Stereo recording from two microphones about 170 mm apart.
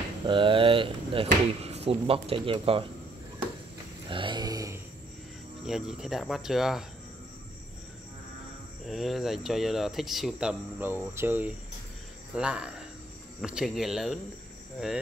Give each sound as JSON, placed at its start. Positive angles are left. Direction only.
{"t": 0.3, "sound": "speech", "side_deg": -30}
{"t": 4.1, "sound": "a sound", "side_deg": -30}
{"t": 5.7, "sound": "speech", "side_deg": -5}
{"t": 8.8, "sound": "speech", "side_deg": 0}
{"t": 10.8, "sound": "cricket", "side_deg": -10}
{"t": 13.4, "sound": "speech", "side_deg": -5}